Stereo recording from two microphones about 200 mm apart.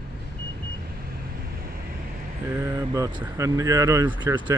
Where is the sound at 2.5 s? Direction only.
15° right (ahead or behind).